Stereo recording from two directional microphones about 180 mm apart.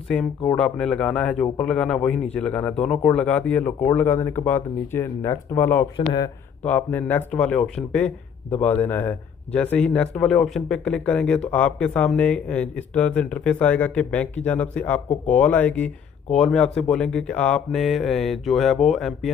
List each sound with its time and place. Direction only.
0.1 s speech: 5° left (ahead or behind)